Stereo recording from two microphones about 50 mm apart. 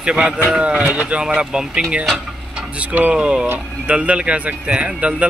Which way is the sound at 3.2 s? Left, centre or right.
Centre.